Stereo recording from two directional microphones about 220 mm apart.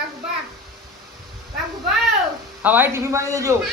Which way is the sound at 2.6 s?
10° right (ahead or behind).